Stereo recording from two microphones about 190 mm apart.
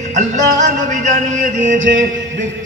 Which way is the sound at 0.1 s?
40° right (ahead or behind).